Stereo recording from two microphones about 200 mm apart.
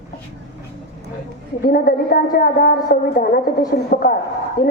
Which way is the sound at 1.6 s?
45° left (ahead or behind).